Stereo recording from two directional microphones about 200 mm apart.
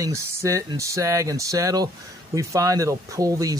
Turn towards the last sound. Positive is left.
turn(degrees=-15)  # may be behind; listen again after turning